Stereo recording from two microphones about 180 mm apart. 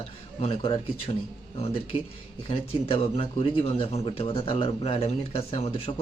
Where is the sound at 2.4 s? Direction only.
30° left (ahead or behind).